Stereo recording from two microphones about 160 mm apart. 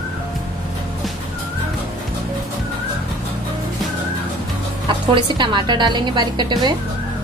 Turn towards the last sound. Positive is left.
turn(degrees=-25)  # may be behind; listen again after turning